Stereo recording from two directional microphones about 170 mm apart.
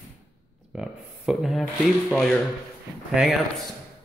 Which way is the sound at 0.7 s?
5° right (ahead or behind).